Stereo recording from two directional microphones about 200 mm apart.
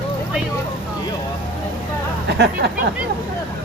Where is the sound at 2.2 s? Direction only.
55° right (ahead or behind).